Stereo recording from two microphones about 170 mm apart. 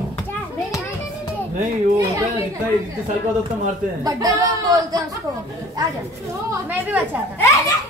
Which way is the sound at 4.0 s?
20° right (ahead or behind).